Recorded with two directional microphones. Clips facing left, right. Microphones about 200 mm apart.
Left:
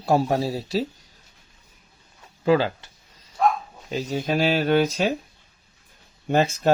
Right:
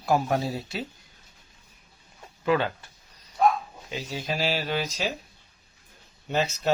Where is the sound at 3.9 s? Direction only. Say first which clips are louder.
Left 7 dB; 45° left (ahead or behind).